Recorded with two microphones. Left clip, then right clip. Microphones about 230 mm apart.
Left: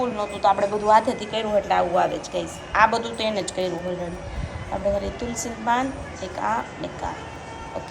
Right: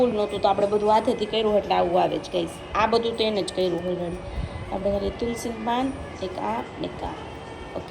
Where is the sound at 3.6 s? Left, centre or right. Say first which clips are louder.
Right 3 dB; left.